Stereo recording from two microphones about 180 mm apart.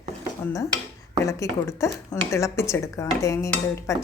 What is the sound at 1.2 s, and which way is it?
A woman's voice, 15° left (ahead or behind).